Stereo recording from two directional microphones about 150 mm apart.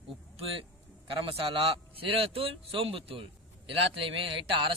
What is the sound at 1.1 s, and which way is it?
A man's voice, 35° right (ahead or behind).